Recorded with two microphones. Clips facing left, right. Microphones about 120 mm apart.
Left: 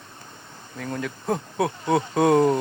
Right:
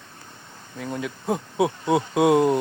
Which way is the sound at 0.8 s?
5° right (ahead or behind).